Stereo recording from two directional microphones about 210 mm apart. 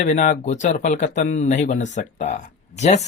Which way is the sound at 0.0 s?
35° left (ahead or behind).